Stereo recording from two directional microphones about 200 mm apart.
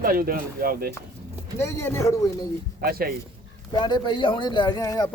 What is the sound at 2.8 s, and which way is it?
Speech, 50° right (ahead or behind).